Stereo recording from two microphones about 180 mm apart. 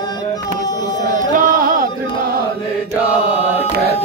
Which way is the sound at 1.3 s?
50° right (ahead or behind).